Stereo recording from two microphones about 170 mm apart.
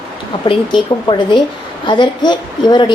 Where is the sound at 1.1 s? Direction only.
30° left (ahead or behind).